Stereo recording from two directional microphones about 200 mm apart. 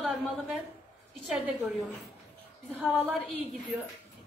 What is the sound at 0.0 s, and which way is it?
A woman's voice, centre (ahead or behind).